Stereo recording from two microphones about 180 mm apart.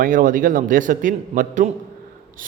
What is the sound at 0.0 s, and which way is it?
A man's voice, 50° right (ahead or behind).